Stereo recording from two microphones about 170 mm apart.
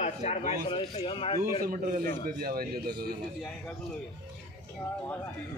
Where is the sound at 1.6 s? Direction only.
55° right (ahead or behind).